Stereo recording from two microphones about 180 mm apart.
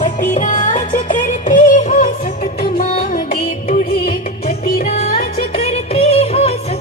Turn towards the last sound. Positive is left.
turn(degrees=35)  # may be behind; listen again after turning